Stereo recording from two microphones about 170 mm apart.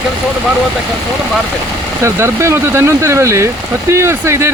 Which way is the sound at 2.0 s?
15° right (ahead or behind).